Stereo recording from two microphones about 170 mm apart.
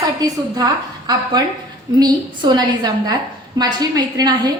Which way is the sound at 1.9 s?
25° right (ahead or behind).